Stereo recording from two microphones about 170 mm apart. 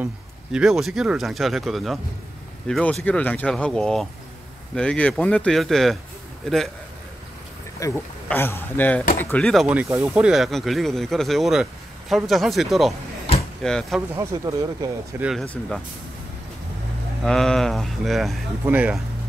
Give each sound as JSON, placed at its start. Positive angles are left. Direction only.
{"t": 0.0, "sound": "speech", "side_deg": -5}
{"t": 7.8, "sound": "speech", "side_deg": 15}
{"t": 14.1, "sound": "speech", "side_deg": -20}
{"t": 15.1, "sound": "speech", "side_deg": -5}
{"t": 15.4, "sound": "speech", "side_deg": 10}
{"t": 17.2, "sound": "speech", "side_deg": 5}